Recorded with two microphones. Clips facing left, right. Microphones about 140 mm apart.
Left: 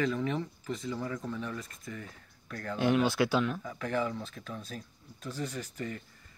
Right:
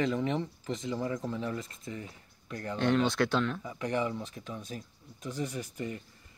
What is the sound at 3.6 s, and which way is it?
Speech, 15° right (ahead or behind).